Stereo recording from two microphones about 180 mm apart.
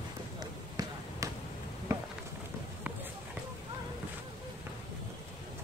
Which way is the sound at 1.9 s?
15° right (ahead or behind).